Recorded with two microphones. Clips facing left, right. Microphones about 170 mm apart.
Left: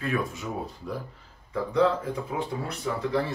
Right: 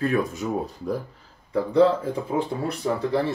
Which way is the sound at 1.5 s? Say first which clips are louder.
Right 5 dB; 30° right (ahead or behind).